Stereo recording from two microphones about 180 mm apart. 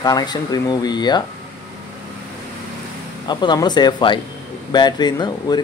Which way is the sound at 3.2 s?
25° left (ahead or behind).